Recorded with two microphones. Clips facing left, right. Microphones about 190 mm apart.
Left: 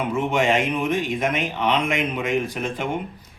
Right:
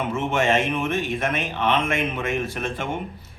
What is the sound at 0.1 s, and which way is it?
A man's voice, 15° left (ahead or behind).